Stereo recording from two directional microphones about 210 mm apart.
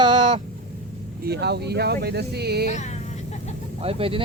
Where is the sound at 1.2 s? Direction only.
50° right (ahead or behind).